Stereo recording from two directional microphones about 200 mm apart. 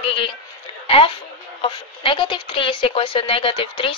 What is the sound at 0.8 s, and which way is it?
A woman's voice, 30° left (ahead or behind).